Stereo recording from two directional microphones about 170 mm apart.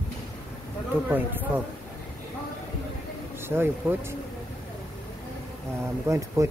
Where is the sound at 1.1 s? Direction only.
10° right (ahead or behind).